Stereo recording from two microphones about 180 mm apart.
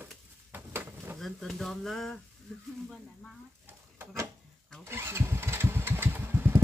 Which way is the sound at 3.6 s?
15° right (ahead or behind).